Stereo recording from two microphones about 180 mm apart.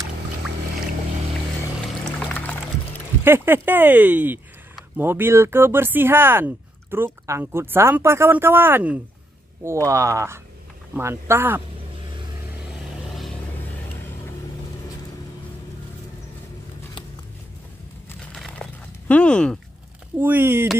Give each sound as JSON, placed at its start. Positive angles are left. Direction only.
{"t": 3.3, "sound": "speech", "side_deg": -10}
{"t": 18.3, "sound": "a sound", "side_deg": 5}
{"t": 20.2, "sound": "speech", "side_deg": -10}